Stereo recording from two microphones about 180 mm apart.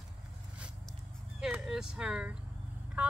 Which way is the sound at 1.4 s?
5° right (ahead or behind).